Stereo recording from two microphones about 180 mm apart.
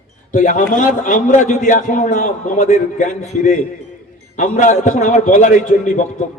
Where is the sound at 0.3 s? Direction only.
45° left (ahead or behind).